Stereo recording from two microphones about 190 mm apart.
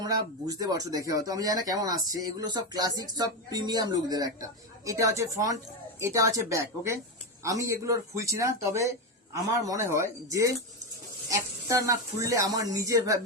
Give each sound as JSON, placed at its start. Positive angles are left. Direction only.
{"t": 0.0, "sound": "speech", "side_deg": -20}